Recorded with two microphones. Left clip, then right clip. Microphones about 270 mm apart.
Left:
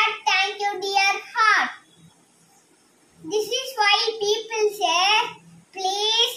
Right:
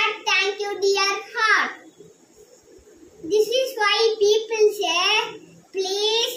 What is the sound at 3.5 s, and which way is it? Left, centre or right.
Child singing, centre.